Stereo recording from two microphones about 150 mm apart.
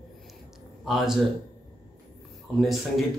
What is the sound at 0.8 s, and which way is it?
Speech, centre (ahead or behind).